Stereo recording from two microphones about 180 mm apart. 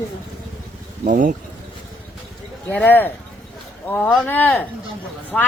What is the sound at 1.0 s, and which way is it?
Speech, 45° right (ahead or behind).